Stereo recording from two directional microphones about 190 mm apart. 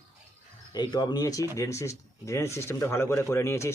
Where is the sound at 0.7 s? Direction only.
20° left (ahead or behind).